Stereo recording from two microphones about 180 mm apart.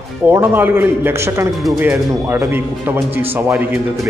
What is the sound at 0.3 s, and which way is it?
A man's voice, 10° right (ahead or behind).